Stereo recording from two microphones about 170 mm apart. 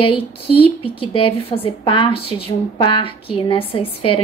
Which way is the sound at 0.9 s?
30° left (ahead or behind).